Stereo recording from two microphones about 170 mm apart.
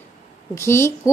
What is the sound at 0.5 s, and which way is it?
Speech, 15° left (ahead or behind).